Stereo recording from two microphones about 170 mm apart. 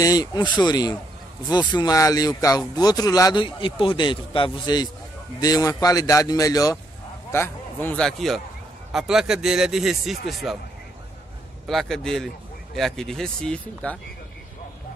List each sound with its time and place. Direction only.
0.0 s a man's voice: 20° left (ahead or behind); by 10.6 s centre (ahead or behind)
11.6 s speech: centre (ahead or behind)